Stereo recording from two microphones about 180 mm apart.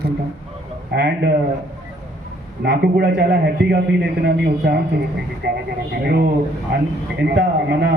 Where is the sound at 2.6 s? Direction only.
65° right (ahead or behind).